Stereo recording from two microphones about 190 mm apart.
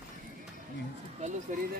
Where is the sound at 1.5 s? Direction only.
40° right (ahead or behind).